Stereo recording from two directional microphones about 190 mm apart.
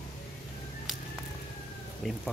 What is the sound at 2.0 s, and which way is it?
Speech, centre (ahead or behind).